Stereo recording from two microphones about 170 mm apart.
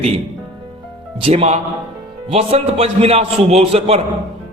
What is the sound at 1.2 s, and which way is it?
A man's voice, 40° right (ahead or behind).